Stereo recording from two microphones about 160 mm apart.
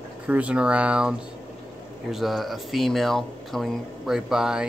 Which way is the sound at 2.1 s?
Centre (ahead or behind).